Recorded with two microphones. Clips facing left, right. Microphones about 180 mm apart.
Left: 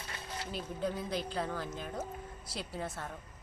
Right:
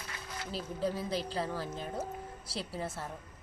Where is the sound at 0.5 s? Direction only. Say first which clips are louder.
Right 2 dB; 35° right (ahead or behind).